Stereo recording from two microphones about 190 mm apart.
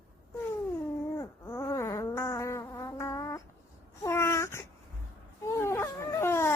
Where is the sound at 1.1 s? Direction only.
15° left (ahead or behind).